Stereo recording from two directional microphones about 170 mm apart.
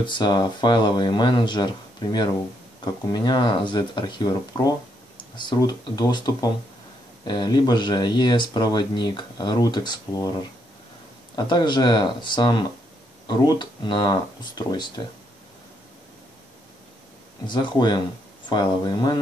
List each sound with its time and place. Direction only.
0.0 s speech: 25° left (ahead or behind)
17.5 s speech: 25° left (ahead or behind)